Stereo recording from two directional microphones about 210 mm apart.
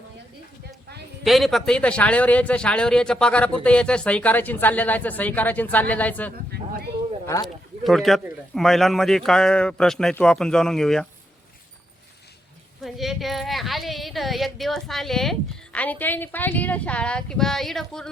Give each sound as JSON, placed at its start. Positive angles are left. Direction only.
{"t": 1.2, "sound": "a woman's voice", "side_deg": 0}
{"t": 6.3, "sound": "a sound", "side_deg": -45}
{"t": 7.4, "sound": "speech", "side_deg": 0}
{"t": 12.8, "sound": "speech", "side_deg": 0}